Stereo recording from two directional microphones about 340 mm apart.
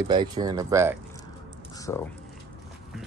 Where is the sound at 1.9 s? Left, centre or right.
Centre.